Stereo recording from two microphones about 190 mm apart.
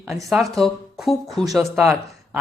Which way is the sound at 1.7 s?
10° right (ahead or behind).